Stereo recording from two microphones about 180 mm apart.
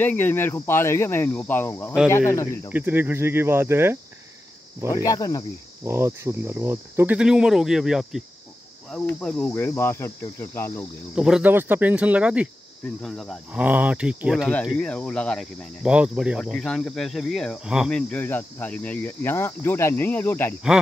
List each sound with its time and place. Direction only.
0.0 s speech: 10° left (ahead or behind)
2.7 s speech: 10° right (ahead or behind)
4.9 s speech: 20° left (ahead or behind)
5.9 s speech: 15° right (ahead or behind); by 10.9 s 15° left (ahead or behind)
11.1 s speech: 5° right (ahead or behind); by 20.5 s 10° left (ahead or behind)